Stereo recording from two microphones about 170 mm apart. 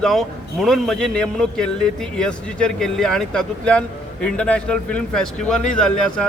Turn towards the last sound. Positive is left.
turn(degrees=5)  # may be behind; listen again after turning